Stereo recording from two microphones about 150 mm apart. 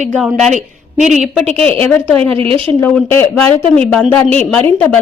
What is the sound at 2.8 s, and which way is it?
A woman's voice, 10° left (ahead or behind).